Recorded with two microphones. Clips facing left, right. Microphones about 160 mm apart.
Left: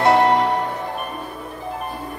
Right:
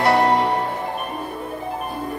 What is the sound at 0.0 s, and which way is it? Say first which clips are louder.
Music: left 2 dB; 20° left (ahead or behind).